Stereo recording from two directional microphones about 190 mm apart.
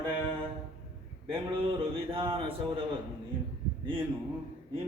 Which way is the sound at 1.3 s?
30° right (ahead or behind).